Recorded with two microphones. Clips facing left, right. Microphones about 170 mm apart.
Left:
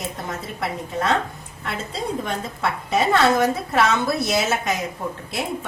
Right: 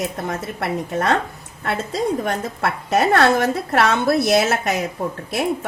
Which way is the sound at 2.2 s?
65° right (ahead or behind).